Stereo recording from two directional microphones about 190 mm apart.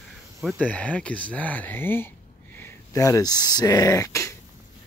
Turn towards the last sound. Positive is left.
turn(degrees=15)  # may be behind; listen again after turning